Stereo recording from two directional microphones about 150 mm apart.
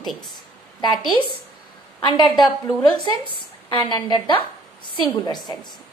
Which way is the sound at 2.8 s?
30° left (ahead or behind).